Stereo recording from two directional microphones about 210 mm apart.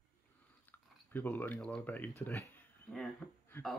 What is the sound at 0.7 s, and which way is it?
Speech, 10° left (ahead or behind).